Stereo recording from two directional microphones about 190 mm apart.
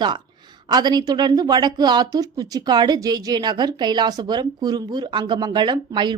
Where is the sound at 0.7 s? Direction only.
20° right (ahead or behind).